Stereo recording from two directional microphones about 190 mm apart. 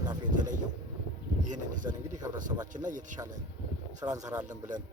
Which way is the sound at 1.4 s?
45° right (ahead or behind).